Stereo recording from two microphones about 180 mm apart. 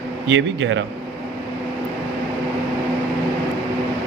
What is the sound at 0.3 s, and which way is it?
Speech, 90° right.